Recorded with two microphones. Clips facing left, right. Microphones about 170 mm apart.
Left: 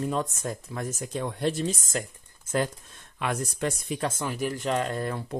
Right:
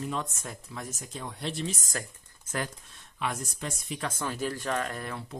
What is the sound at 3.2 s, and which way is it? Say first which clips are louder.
Speech: left 5 dB; 65° left (ahead or behind).